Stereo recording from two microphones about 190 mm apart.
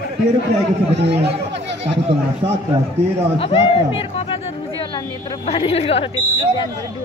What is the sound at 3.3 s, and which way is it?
Speech, 30° left (ahead or behind).